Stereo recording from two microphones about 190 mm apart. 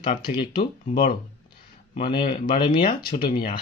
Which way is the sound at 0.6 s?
40° left (ahead or behind).